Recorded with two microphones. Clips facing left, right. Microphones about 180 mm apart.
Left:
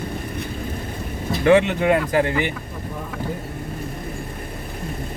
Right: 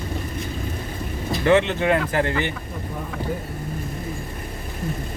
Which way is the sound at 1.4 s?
15° left (ahead or behind).